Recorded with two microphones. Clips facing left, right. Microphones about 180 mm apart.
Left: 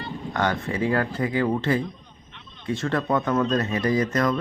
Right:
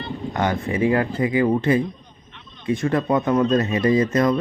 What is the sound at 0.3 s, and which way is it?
Speech, 15° right (ahead or behind).